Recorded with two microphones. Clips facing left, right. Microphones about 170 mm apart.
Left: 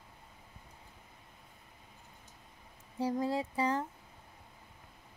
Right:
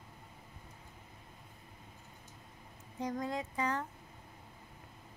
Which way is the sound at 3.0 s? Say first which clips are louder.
Left 5 dB; 30° left (ahead or behind).